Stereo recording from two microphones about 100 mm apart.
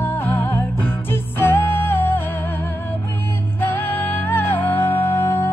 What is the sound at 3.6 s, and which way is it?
Music, 20° left (ahead or behind).